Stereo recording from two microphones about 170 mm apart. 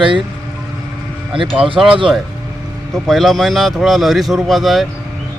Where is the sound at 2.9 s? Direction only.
Centre (ahead or behind).